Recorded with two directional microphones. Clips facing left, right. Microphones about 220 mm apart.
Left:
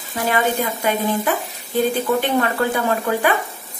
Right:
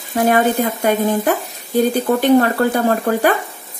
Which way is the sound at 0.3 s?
45° right (ahead or behind).